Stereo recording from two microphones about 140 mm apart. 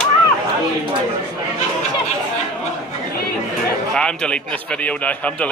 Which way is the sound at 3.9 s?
5° left (ahead or behind).